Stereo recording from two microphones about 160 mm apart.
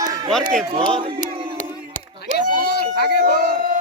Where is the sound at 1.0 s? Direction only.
35° right (ahead or behind).